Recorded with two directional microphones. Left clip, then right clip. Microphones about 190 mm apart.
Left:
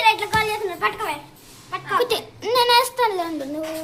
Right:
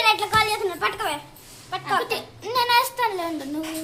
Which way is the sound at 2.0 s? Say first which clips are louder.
Left 5 dB; 40° left (ahead or behind).